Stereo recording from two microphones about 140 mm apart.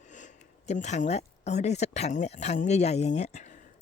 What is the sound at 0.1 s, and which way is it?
Speech, 60° left (ahead or behind).